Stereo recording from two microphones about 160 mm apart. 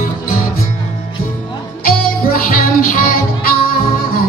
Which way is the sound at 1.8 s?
60° left (ahead or behind).